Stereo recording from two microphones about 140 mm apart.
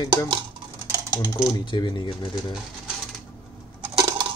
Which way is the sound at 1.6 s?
35° left (ahead or behind).